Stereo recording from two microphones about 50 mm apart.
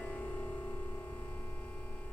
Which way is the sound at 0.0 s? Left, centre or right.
Left.